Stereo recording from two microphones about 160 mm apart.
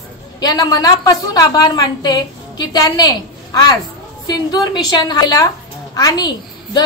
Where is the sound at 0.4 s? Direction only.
25° left (ahead or behind).